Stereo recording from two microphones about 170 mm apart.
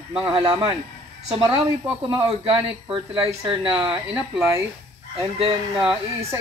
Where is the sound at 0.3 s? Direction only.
30° right (ahead or behind).